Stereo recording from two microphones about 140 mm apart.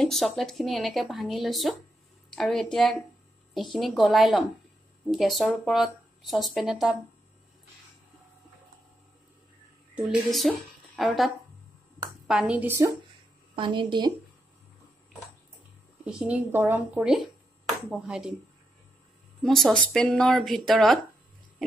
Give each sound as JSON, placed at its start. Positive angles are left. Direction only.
{"t": 0.0, "sound": "speech", "side_deg": 0}
{"t": 9.9, "sound": "speech", "side_deg": 0}
{"t": 13.6, "sound": "a woman's voice", "side_deg": -35}
{"t": 16.1, "sound": "speech", "side_deg": -10}
{"t": 19.4, "sound": "speech", "side_deg": 0}